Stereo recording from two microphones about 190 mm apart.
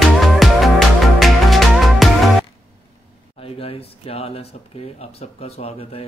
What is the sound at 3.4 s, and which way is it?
Speech, 30° left (ahead or behind).